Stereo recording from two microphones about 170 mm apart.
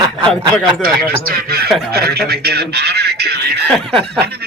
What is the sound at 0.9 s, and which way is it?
Speech, 60° right (ahead or behind).